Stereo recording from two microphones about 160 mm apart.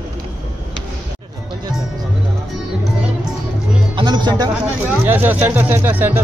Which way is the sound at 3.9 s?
25° right (ahead or behind).